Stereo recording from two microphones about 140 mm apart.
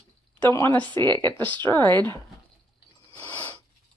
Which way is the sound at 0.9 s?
30° right (ahead or behind).